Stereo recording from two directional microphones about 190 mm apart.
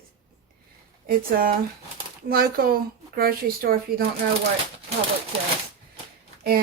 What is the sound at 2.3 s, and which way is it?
Speech, 50° right (ahead or behind).